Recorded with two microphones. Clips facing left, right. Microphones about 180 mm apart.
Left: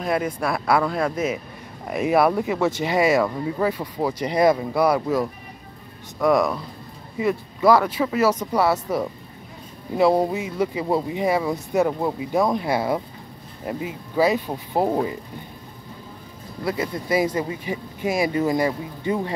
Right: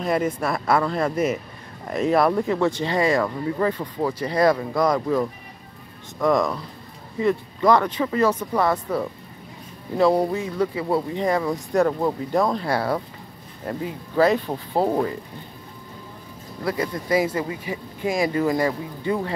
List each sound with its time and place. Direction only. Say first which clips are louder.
0.0 s speech: right 1 dB; centre (ahead or behind)
10.1 s speech: even; 15° left (ahead or behind)
16.6 s speech: even; 25° left (ahead or behind)